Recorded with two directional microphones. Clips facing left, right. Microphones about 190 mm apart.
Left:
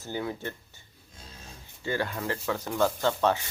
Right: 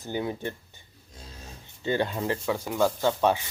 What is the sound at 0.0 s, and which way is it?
Speech, 20° right (ahead or behind).